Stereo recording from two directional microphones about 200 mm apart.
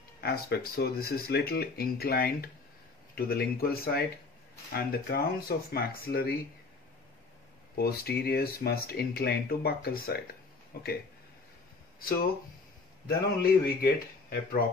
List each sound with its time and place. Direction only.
0.2 s speech: 50° left (ahead or behind)
7.7 s speech: 50° left (ahead or behind)
13.0 s speech: 50° left (ahead or behind)